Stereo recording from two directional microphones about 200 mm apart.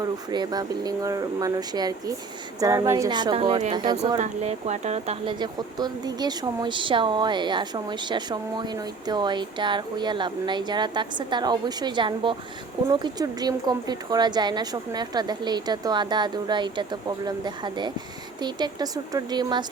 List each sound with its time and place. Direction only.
0.0 s speech: 20° right (ahead or behind)
4.2 s speech: 35° right (ahead or behind)